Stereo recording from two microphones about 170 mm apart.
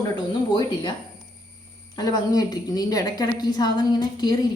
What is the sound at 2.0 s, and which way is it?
A woman's voice, 25° left (ahead or behind).